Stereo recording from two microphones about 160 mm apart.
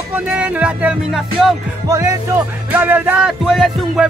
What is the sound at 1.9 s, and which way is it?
Speech, 20° right (ahead or behind).